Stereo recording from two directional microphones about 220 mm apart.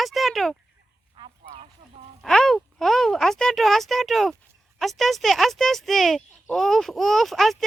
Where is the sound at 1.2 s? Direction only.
25° right (ahead or behind).